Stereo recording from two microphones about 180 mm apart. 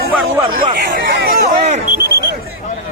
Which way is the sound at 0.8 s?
55° right (ahead or behind).